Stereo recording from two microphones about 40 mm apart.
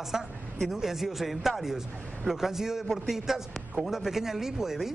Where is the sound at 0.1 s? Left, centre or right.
Centre.